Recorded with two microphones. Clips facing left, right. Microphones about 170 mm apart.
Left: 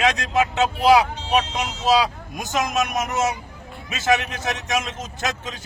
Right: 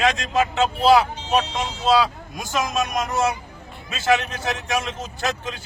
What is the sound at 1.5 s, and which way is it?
Speech, 20° left (ahead or behind).